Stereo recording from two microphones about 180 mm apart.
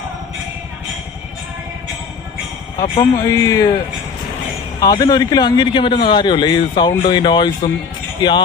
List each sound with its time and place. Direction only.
3.0 s a man's voice: 20° left (ahead or behind)
4.8 s a man's voice: 20° left (ahead or behind)